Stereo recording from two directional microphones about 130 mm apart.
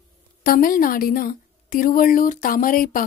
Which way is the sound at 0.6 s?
90° left.